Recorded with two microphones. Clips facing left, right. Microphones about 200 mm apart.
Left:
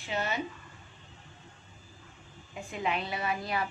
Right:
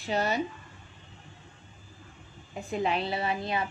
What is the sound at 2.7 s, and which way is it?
Speech, 35° right (ahead or behind).